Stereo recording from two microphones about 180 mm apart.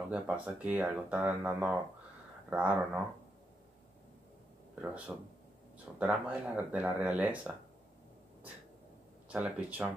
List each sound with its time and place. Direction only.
0.1 s speech: 5° right (ahead or behind)
4.8 s speech: 10° right (ahead or behind)
9.3 s speech: 10° right (ahead or behind)